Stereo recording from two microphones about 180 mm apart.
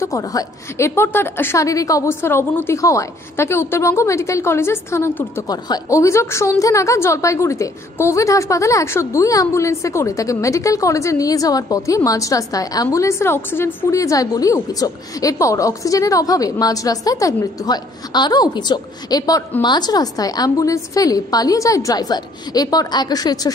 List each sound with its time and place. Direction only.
0.0 s a woman's voice: 20° left (ahead or behind)